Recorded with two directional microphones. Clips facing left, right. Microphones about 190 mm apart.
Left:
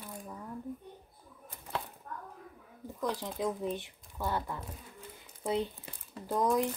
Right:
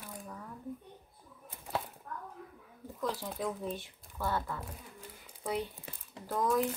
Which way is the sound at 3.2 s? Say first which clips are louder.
Left 3 dB; 20° left (ahead or behind).